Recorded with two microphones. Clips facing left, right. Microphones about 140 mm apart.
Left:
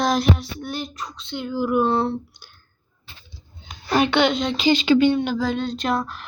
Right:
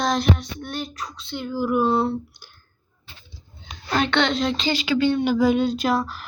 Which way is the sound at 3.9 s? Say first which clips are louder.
Left 3 dB; 10° left (ahead or behind).